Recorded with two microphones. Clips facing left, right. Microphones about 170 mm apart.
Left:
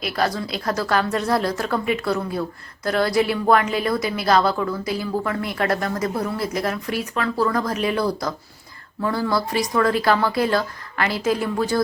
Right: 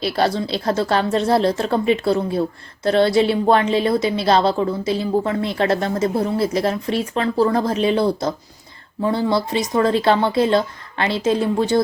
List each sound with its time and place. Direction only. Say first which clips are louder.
0.0 s a woman's voice: right 4 dB; 30° right (ahead or behind)